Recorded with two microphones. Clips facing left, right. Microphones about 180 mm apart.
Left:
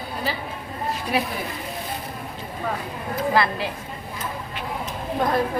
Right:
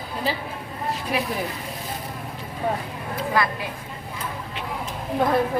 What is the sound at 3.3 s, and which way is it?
Speech, 30° left (ahead or behind).